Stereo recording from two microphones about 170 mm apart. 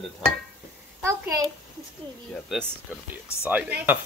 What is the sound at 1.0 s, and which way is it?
Speech, 15° right (ahead or behind).